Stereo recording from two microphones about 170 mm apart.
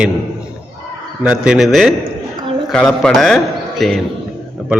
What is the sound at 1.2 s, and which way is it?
A man's voice, 5° right (ahead or behind).